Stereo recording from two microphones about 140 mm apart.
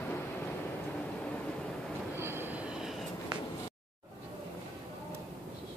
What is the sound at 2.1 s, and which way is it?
Train, 15° right (ahead or behind).